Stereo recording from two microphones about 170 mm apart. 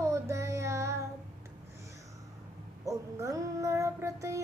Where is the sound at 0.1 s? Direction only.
15° right (ahead or behind).